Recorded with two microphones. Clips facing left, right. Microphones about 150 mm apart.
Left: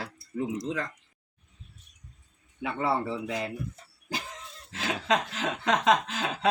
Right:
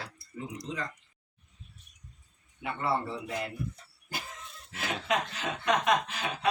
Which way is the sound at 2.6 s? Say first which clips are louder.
Left 3 dB; 80° left.